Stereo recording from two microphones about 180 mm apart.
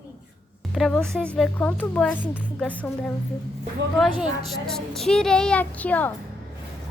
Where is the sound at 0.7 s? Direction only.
Centre (ahead or behind).